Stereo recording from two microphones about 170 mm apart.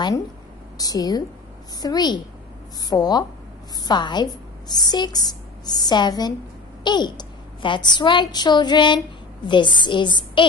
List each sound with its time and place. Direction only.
0.7 s a woman's voice: 20° left (ahead or behind)